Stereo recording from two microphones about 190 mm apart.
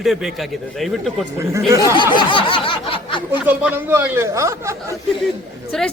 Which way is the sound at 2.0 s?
25° left (ahead or behind).